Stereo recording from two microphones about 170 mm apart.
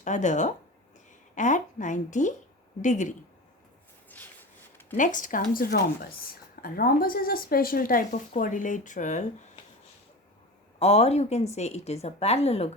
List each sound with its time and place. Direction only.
0.0 s a woman's voice: 45° left (ahead or behind)
4.9 s a woman's voice: 50° left (ahead or behind)
10.8 s a woman's voice: 40° left (ahead or behind)